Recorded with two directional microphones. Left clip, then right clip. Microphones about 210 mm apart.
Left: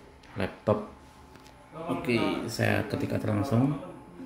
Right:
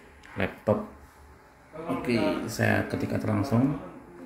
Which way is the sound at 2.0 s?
Centre (ahead or behind).